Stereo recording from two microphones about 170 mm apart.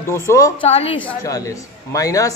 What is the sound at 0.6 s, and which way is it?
Speech, 35° left (ahead or behind).